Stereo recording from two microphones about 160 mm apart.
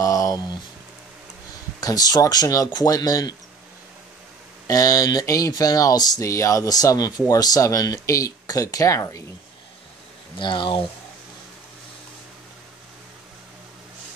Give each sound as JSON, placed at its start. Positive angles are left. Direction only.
{"t": 0.0, "sound": "a sound", "side_deg": 20}
{"t": 1.8, "sound": "speech", "side_deg": 25}
{"t": 4.6, "sound": "speech", "side_deg": 20}
{"t": 10.4, "sound": "speech", "side_deg": 30}